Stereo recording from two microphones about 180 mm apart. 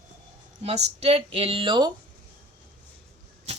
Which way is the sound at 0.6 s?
40° right (ahead or behind).